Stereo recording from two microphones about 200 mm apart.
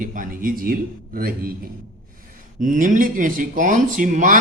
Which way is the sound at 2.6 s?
40° right (ahead or behind).